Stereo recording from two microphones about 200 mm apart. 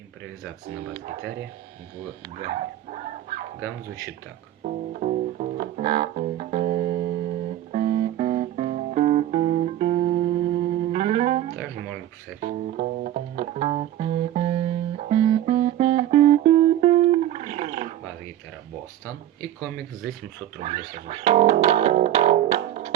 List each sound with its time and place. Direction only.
4.6 s music: 40° right (ahead or behind)
20.6 s speech: 35° right (ahead or behind)